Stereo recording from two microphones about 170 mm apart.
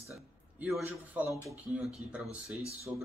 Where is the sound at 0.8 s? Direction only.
10° right (ahead or behind).